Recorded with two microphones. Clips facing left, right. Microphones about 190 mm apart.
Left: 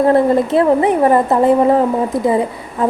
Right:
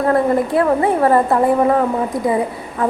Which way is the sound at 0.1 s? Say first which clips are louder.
Left 3 dB; 25° left (ahead or behind).